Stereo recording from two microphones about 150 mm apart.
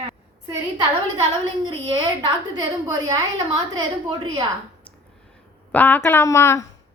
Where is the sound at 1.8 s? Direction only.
30° right (ahead or behind).